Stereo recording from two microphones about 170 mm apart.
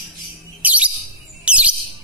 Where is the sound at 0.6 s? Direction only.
10° right (ahead or behind).